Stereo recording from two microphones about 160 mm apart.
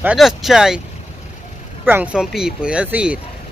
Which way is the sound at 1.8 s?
10° right (ahead or behind).